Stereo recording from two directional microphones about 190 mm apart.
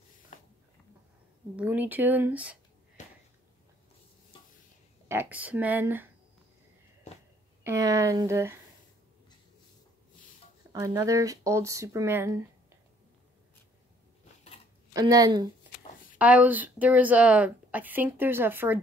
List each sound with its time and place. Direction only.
1.6 s a woman's voice: 10° right (ahead or behind)
3.0 s sniff: 40° left (ahead or behind)
5.0 s a woman's voice: 10° right (ahead or behind)
7.6 s a woman's voice: 15° right (ahead or behind)
10.7 s a woman's voice: 15° right (ahead or behind)
14.9 s speech: 20° right (ahead or behind)
16.2 s a woman's voice: 10° right (ahead or behind)